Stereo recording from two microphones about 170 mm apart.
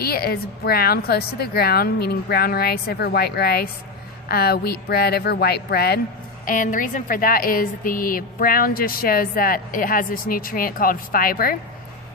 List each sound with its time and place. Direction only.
0.0 s a woman's voice: 65° left (ahead or behind)
6.4 s a woman's voice: 50° left (ahead or behind)